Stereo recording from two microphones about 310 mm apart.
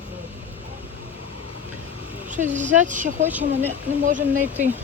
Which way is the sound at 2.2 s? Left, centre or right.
Right.